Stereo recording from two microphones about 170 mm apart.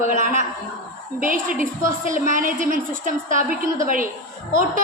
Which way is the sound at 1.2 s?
55° right (ahead or behind).